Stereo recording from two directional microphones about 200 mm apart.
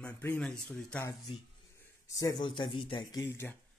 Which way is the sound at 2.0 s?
15° left (ahead or behind).